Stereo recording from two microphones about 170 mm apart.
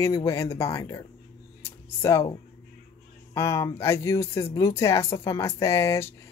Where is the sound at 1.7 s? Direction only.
15° left (ahead or behind).